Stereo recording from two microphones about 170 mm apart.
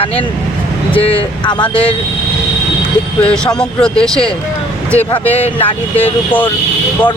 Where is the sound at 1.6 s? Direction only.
5° left (ahead or behind).